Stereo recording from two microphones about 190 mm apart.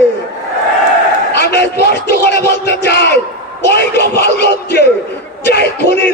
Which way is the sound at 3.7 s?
60° left (ahead or behind).